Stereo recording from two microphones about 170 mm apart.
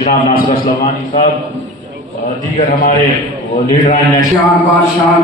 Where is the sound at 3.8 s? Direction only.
50° left (ahead or behind).